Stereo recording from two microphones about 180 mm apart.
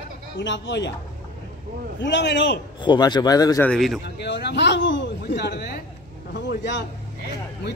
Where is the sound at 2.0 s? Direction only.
80° left.